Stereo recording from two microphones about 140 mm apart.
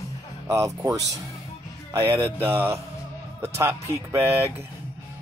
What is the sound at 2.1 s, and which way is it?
Music, 20° right (ahead or behind).